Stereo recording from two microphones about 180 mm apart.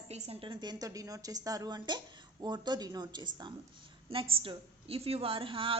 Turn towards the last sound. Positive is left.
turn(degrees=-30)  # may be behind; listen again after turning